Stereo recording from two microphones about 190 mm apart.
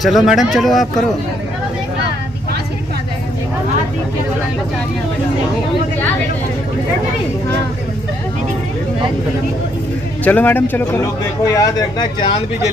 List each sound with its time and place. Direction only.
0.0 s speech: centre (ahead or behind)
10.2 s speech: 10° left (ahead or behind)